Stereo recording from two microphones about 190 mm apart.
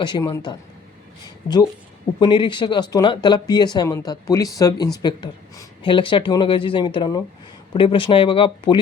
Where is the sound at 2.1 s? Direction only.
25° left (ahead or behind).